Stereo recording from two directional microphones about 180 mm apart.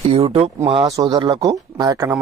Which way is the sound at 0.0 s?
35° right (ahead or behind).